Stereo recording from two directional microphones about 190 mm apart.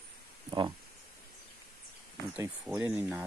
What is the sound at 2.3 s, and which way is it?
Speech, 5° right (ahead or behind).